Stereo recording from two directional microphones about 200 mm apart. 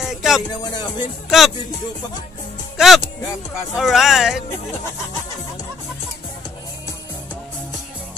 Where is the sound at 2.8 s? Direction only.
5° right (ahead or behind).